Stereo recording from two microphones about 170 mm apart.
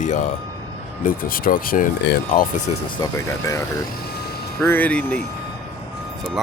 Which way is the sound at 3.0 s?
20° left (ahead or behind).